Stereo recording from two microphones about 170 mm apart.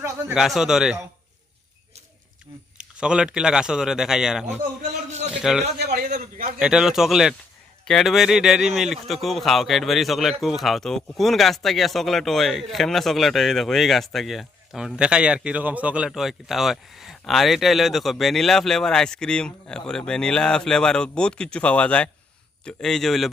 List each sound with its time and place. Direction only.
0.3 s speech: centre (ahead or behind)
2.7 s speech: 5° right (ahead or behind)
5.8 s a sound: 65° right (ahead or behind)
6.1 s a man's voice: 50° right (ahead or behind)
6.6 s speech: 5° right (ahead or behind)